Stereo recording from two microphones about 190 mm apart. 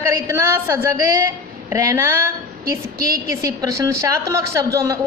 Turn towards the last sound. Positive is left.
turn(degrees=-15)  # may be behind; listen again after turning